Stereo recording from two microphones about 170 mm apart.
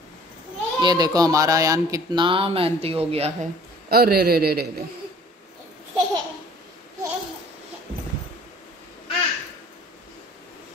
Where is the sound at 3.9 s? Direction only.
65° right (ahead or behind).